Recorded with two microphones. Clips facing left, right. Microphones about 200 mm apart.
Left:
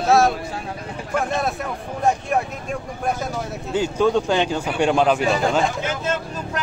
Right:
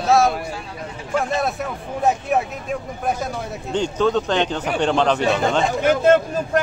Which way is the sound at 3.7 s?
10° left (ahead or behind).